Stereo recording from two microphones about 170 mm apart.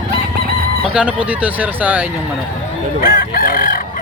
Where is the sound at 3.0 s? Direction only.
55° left (ahead or behind).